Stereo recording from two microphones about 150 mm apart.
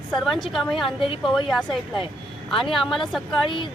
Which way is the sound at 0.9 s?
35° left (ahead or behind).